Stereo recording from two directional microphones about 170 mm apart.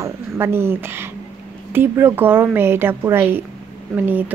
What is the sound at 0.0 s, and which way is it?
A woman's voice, 15° right (ahead or behind).